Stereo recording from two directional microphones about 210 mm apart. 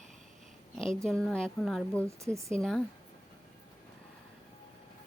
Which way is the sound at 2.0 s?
15° right (ahead or behind).